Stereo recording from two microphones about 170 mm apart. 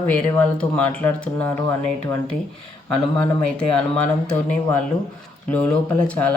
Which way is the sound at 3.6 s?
5° left (ahead or behind).